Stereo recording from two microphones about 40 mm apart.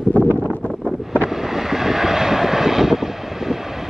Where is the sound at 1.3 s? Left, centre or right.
Centre.